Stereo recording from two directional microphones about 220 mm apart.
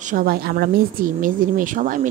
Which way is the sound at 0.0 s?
40° right (ahead or behind).